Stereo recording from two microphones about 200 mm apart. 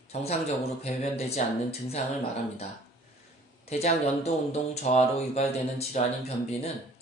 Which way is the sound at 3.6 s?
30° left (ahead or behind).